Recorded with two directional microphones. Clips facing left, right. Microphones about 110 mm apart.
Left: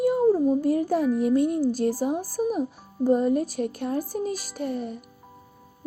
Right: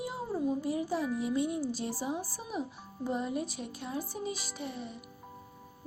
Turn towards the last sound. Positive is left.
turn(degrees=50)  # may be behind; listen again after turning